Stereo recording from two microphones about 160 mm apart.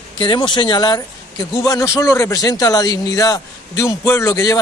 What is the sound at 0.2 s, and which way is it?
Speech, 30° left (ahead or behind).